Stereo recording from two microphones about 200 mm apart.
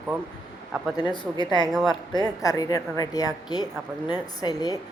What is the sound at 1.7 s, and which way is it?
Speech, centre (ahead or behind).